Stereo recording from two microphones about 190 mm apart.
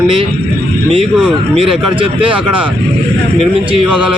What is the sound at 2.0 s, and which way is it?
Speech, 30° right (ahead or behind).